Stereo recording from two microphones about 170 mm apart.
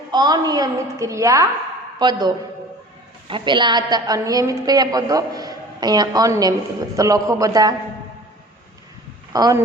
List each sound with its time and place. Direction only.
0.1 s a woman's voice: 25° right (ahead or behind)
9.3 s a woman's voice: 20° right (ahead or behind)